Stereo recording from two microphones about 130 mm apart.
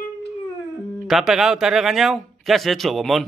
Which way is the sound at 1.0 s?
Centre (ahead or behind).